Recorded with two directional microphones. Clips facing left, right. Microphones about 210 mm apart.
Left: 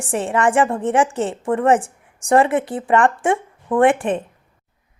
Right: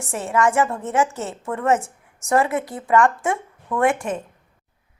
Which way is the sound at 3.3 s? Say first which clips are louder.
Left 5 dB; 30° left (ahead or behind).